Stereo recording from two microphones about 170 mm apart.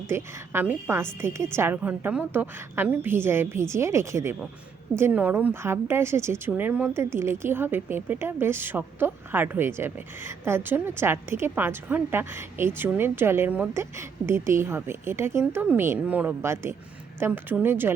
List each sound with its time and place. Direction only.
0.1 s speech: 15° right (ahead or behind)